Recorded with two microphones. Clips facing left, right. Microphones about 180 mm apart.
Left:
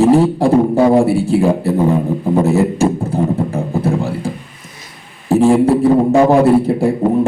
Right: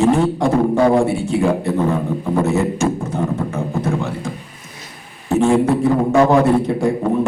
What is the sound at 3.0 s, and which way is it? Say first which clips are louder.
Music: left 4 dB; 35° left (ahead or behind).